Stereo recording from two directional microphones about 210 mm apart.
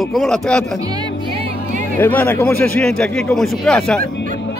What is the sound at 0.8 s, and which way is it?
Speech, 20° right (ahead or behind).